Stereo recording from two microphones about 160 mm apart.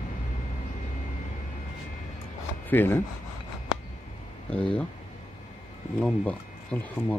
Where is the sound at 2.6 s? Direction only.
15° left (ahead or behind).